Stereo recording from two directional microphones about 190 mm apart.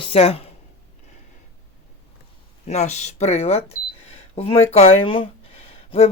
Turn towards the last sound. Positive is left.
turn(degrees=35)  # may be behind; listen again after turning